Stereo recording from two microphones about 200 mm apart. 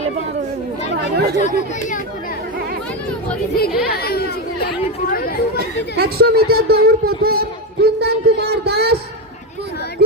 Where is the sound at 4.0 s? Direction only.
50° left (ahead or behind).